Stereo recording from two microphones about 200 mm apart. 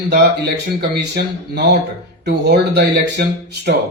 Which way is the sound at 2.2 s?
55° right (ahead or behind).